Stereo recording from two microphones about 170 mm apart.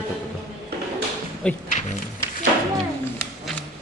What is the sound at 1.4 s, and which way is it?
Speech, 5° left (ahead or behind).